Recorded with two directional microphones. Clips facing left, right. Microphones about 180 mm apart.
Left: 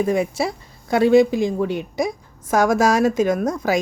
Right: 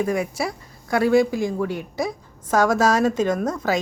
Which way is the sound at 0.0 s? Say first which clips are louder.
Left 3 dB; 25° left (ahead or behind).